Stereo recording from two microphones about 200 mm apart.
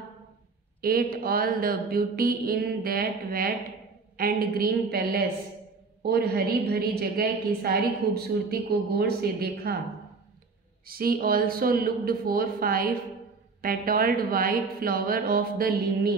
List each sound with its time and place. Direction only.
0.7 s a woman's voice: 45° right (ahead or behind)
10.9 s a woman's voice: 45° right (ahead or behind)